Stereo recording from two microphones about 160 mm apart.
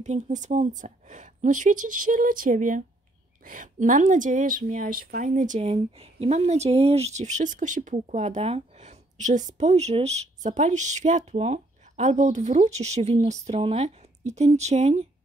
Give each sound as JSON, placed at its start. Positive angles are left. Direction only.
{"t": 0.0, "sound": "speech", "side_deg": -45}